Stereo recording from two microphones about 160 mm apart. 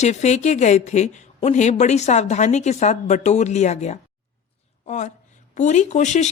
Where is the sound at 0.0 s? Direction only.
45° left (ahead or behind).